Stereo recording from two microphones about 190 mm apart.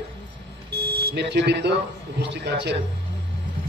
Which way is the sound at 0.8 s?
55° right (ahead or behind).